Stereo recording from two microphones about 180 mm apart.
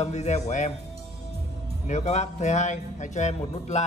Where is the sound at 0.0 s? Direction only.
40° left (ahead or behind).